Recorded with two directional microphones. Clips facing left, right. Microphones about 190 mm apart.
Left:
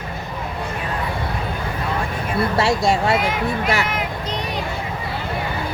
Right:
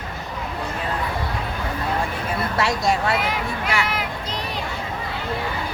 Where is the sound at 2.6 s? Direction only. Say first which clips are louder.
Left 2 dB; 25° left (ahead or behind).